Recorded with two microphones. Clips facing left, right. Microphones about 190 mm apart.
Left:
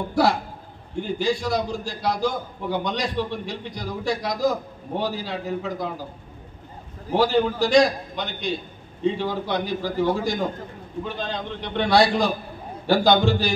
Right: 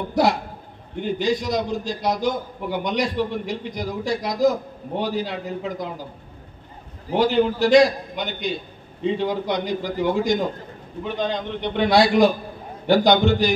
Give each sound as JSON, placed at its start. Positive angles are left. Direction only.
{"t": 0.1, "sound": "a sound", "side_deg": -20}
{"t": 0.9, "sound": "a man's voice", "side_deg": -20}
{"t": 7.1, "sound": "a man's voice", "side_deg": -20}